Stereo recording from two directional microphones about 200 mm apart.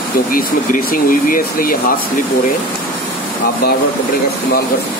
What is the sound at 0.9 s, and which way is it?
Speech, 45° left (ahead or behind).